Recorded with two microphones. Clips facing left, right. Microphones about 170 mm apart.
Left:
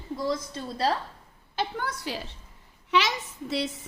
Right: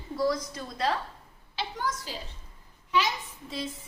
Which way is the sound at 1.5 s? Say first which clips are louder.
Left 2 dB; 55° left (ahead or behind).